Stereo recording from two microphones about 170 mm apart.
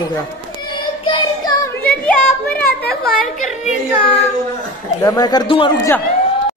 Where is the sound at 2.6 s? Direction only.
65° left (ahead or behind).